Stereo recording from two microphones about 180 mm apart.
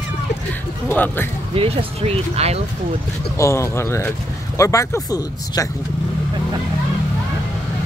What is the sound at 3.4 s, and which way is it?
Speech, 15° left (ahead or behind).